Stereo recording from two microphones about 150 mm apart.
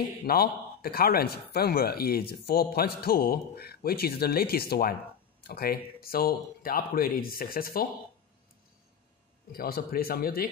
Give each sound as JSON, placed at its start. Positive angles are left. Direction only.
{"t": 0.2, "sound": "speech", "side_deg": 90}
{"t": 9.5, "sound": "a man's voice", "side_deg": 85}